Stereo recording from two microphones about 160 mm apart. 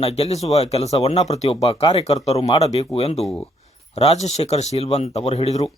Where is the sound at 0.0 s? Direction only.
40° left (ahead or behind).